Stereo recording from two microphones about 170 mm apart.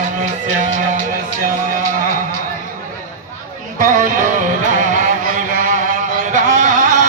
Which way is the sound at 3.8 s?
50° right (ahead or behind).